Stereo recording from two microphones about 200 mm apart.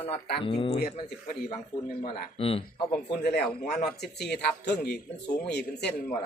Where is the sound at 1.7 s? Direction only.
40° left (ahead or behind).